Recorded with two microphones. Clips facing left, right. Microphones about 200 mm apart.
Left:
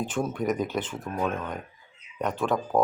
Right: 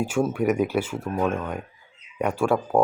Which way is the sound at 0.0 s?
10° right (ahead or behind).